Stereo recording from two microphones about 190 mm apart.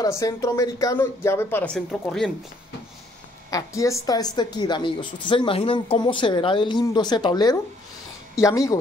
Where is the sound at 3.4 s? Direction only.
15° left (ahead or behind).